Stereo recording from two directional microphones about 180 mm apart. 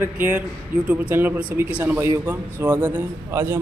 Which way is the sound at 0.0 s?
10° right (ahead or behind).